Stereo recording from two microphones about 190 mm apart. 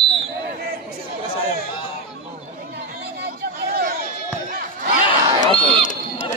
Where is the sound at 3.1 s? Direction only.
55° right (ahead or behind).